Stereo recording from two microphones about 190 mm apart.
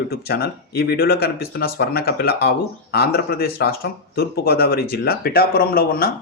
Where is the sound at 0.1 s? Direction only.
55° left (ahead or behind).